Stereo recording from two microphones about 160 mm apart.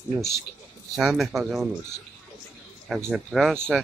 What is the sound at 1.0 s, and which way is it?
Speech, 5° right (ahead or behind).